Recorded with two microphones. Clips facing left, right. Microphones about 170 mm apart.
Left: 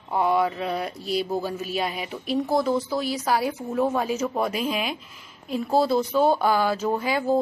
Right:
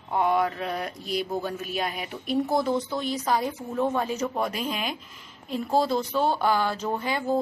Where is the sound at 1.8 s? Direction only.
Centre (ahead or behind).